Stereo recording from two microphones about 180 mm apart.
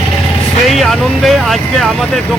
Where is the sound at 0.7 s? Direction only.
Centre (ahead or behind).